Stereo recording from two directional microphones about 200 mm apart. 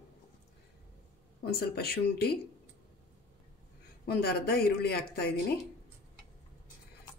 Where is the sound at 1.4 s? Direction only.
50° left (ahead or behind).